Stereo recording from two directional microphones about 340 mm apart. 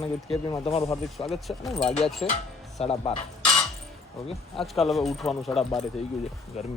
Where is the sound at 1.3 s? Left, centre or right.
Centre.